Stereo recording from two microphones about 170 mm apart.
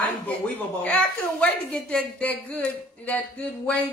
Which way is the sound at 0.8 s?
5° left (ahead or behind).